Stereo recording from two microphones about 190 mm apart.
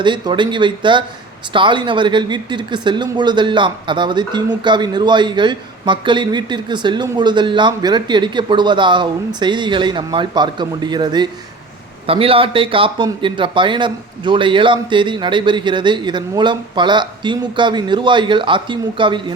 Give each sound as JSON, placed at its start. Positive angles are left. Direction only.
{"t": 0.0, "sound": "speech", "side_deg": -25}